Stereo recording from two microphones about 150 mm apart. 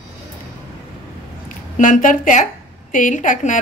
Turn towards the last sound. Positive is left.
turn(degrees=55)  # may be behind; listen again after turning